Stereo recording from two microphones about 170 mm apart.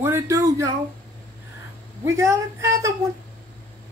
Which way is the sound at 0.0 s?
15° right (ahead or behind).